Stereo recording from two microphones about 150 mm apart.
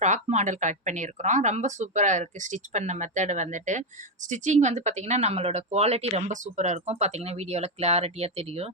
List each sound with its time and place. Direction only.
0.0 s speech: 50° right (ahead or behind)